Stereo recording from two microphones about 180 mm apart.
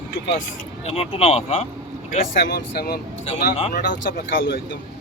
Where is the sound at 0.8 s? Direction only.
35° left (ahead or behind).